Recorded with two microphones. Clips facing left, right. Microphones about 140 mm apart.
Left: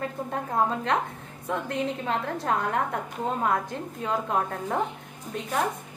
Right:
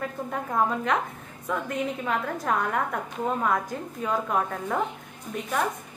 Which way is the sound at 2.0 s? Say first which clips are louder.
Even; 30° left (ahead or behind).